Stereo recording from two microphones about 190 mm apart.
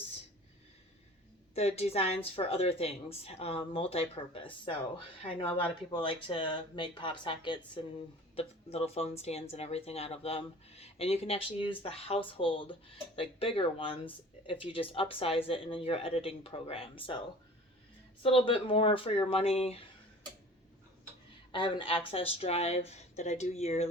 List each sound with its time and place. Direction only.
1.5 s a woman's voice: 35° left (ahead or behind)
18.2 s speech: 30° left (ahead or behind)
21.5 s a woman's voice: 25° left (ahead or behind)